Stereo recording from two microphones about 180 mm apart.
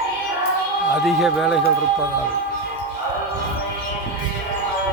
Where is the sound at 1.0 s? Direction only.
Centre (ahead or behind).